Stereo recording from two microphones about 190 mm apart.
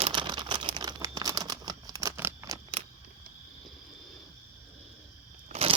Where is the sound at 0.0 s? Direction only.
25° right (ahead or behind).